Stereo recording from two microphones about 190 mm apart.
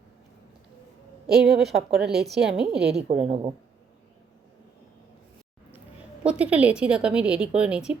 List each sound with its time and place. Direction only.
1.5 s a woman's voice: centre (ahead or behind)
3.1 s a woman's voice: 35° right (ahead or behind)
6.2 s a woman's voice: 5° right (ahead or behind)